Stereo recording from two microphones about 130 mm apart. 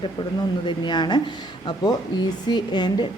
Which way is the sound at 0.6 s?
35° left (ahead or behind).